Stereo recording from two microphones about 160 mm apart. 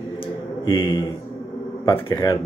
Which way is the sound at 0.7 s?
30° left (ahead or behind).